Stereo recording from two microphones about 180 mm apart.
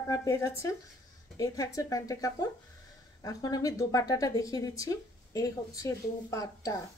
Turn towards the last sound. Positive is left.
turn(degrees=20)  # may be behind; listen again after turning